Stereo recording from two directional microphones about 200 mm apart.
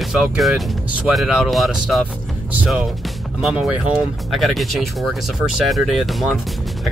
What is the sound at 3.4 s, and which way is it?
Speech, 5° right (ahead or behind).